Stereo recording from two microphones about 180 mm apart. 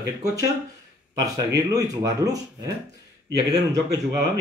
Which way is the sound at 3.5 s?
20° right (ahead or behind).